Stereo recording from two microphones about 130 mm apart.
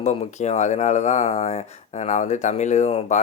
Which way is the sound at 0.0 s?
60° left (ahead or behind).